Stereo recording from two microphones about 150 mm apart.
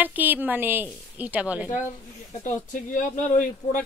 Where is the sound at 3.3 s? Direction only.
55° left (ahead or behind).